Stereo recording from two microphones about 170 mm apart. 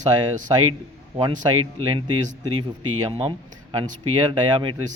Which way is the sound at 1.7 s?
35° right (ahead or behind).